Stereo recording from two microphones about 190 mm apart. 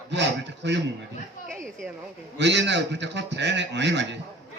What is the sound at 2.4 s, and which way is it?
A man's voice, 70° right (ahead or behind).